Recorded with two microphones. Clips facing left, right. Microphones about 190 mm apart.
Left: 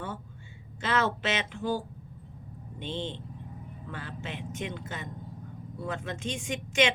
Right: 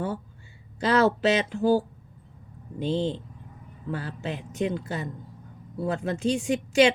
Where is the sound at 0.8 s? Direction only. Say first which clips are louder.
Right 7 dB; 35° right (ahead or behind).